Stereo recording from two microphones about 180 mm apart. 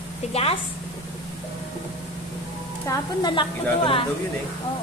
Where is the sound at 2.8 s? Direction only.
25° left (ahead or behind).